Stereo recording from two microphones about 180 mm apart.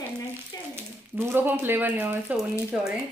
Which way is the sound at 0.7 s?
15° right (ahead or behind).